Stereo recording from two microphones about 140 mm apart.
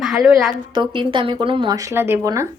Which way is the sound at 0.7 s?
35° right (ahead or behind).